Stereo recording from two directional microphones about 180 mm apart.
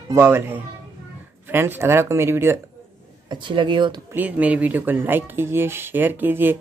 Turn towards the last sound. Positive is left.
turn(degrees=-10)  # may be behind; listen again after turning